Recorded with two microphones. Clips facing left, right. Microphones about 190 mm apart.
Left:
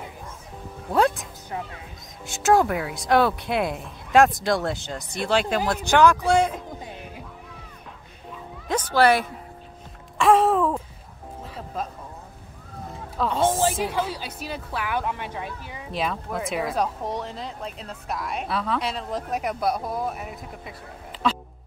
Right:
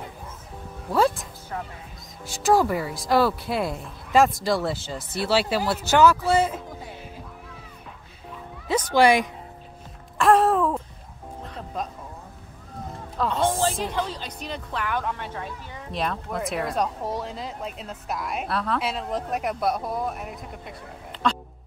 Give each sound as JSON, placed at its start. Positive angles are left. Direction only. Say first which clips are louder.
{"t": 0.8, "sound": "a woman's voice", "louder": "even", "side_deg": 0}
{"t": 2.2, "sound": "a woman's voice", "louder": "left 1 dB", "side_deg": 0}
{"t": 8.9, "sound": "a woman's voice", "louder": "right 1 dB", "side_deg": -15}
{"t": 10.1, "sound": "a sound", "louder": "even", "side_deg": 0}
{"t": 11.4, "sound": "music", "louder": "even", "side_deg": 5}
{"t": 13.2, "sound": "a woman's voice", "louder": "left 1 dB", "side_deg": 0}
{"t": 13.5, "sound": "a woman's voice", "louder": "left 2 dB", "side_deg": 15}
{"t": 21.2, "sound": "music", "louder": "even", "side_deg": 5}